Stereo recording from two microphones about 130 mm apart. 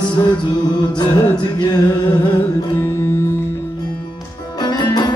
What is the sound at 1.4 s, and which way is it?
Music, 35° left (ahead or behind).